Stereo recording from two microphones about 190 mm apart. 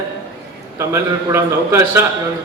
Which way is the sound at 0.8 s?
15° right (ahead or behind).